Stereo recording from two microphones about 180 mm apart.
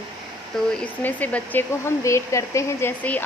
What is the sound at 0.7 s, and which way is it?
Speech, 10° left (ahead or behind).